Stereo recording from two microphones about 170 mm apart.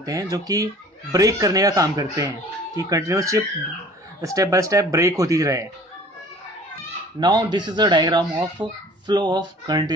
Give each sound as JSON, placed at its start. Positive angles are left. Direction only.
{"t": 0.0, "sound": "speech", "side_deg": -20}
{"t": 7.2, "sound": "speech", "side_deg": -25}